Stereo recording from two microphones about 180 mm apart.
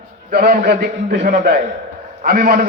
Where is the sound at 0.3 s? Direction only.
60° right (ahead or behind).